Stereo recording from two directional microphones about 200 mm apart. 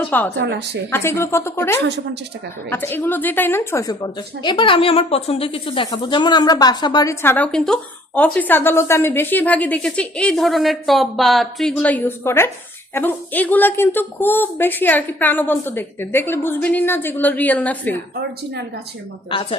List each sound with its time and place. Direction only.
0.1 s a woman's voice: 10° left (ahead or behind)
0.4 s a woman's voice: 60° right (ahead or behind)
0.9 s a woman's voice: 10° left (ahead or behind)
19.3 s a woman's voice: 25° left (ahead or behind)